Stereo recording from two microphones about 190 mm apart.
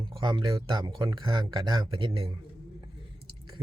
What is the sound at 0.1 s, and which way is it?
Speech, 25° right (ahead or behind).